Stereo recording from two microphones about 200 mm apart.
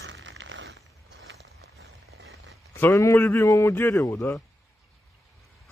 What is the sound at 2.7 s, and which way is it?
A man's voice, 15° left (ahead or behind).